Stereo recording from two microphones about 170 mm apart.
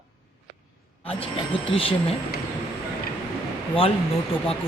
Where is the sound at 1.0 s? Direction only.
35° left (ahead or behind).